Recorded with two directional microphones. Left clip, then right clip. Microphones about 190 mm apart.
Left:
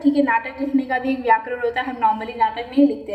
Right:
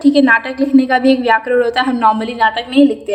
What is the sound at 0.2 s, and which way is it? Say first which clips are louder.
A woman's voice: right 8 dB; 45° right (ahead or behind).